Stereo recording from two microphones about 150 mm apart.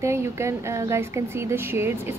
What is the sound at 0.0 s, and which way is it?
A woman's voice, 20° right (ahead or behind).